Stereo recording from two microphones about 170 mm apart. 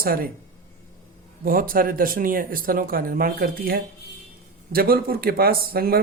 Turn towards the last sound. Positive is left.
turn(degrees=-60)  # may be behind; listen again after turning